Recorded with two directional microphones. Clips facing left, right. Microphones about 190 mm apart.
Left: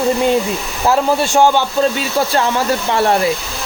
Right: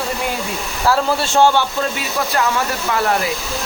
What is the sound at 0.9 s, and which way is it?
Speech, 15° left (ahead or behind).